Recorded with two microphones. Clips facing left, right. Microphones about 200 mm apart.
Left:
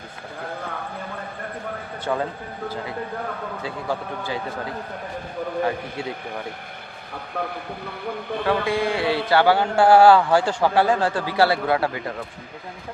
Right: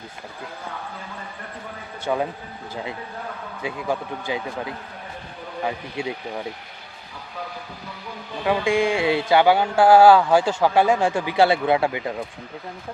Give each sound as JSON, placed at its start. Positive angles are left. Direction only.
{"t": 2.1, "sound": "speech", "side_deg": -10}
{"t": 3.6, "sound": "speech", "side_deg": -15}
{"t": 7.1, "sound": "speech", "side_deg": 60}
{"t": 8.6, "sound": "speech", "side_deg": -25}